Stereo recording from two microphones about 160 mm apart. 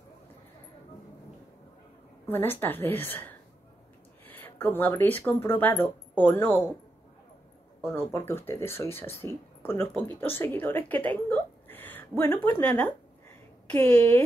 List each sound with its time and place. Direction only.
2.2 s speech: 15° left (ahead or behind)
7.8 s speech: 15° left (ahead or behind)